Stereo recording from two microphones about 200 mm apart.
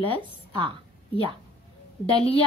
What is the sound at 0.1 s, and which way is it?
Speech, 25° right (ahead or behind).